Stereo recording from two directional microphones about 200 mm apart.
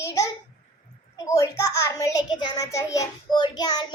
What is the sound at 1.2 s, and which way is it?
A child's voice, 15° left (ahead or behind).